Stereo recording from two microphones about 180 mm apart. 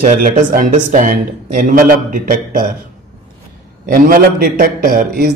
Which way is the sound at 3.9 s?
50° right (ahead or behind).